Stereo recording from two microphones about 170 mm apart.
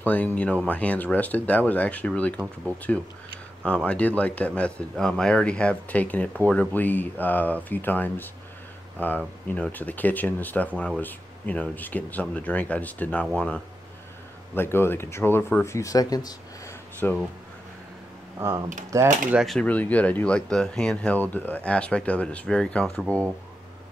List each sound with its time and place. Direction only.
0.0 s speech: 10° left (ahead or behind)
14.5 s speech: 15° left (ahead or behind)
18.9 s speech: 15° right (ahead or behind)
19.3 s speech: centre (ahead or behind)